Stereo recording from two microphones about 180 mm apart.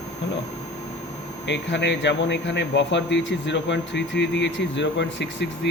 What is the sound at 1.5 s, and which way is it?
Speech, 75° left (ahead or behind).